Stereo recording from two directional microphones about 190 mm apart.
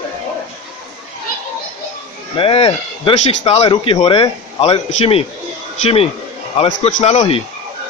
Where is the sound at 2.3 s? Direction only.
30° left (ahead or behind).